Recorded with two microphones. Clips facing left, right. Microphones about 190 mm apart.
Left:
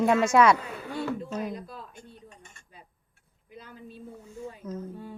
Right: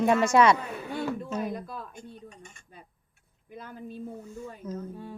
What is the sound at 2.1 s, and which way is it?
Speech, 15° right (ahead or behind).